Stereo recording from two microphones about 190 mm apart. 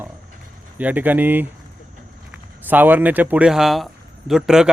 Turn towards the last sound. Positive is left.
turn(degrees=-5)  # may be behind; listen again after turning